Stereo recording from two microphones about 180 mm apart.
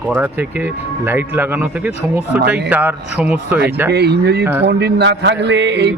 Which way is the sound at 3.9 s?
65° right (ahead or behind).